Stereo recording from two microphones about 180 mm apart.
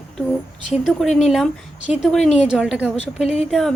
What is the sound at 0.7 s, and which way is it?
Speech, centre (ahead or behind).